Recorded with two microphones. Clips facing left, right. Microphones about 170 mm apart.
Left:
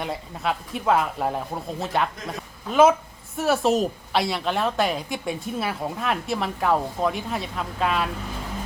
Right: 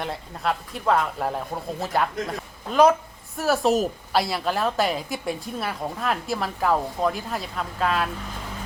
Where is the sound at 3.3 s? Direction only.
Centre (ahead or behind).